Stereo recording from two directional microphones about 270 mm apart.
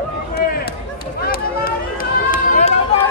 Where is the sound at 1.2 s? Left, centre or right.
Left.